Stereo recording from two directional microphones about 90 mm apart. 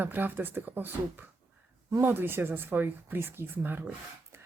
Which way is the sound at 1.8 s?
35° right (ahead or behind).